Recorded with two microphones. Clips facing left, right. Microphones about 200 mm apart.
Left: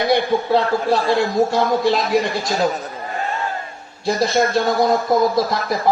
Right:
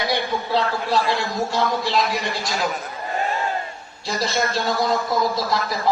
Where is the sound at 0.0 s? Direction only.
50° left (ahead or behind).